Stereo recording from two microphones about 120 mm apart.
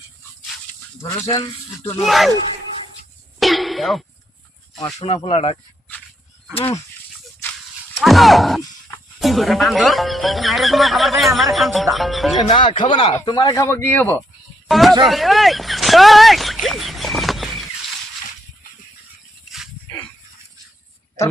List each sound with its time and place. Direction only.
1.0 s speech: 30° left (ahead or behind)
2.0 s speech: centre (ahead or behind)
3.4 s a sound: centre (ahead or behind)
5.0 s speech: 60° left (ahead or behind)
7.9 s speech: centre (ahead or behind)
12.5 s speech: 45° left (ahead or behind)
13.6 s speech: 20° left (ahead or behind)
14.7 s speech: centre (ahead or behind)
16.6 s a sound: centre (ahead or behind)